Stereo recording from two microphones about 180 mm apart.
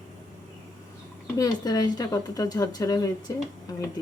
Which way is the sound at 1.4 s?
20° left (ahead or behind).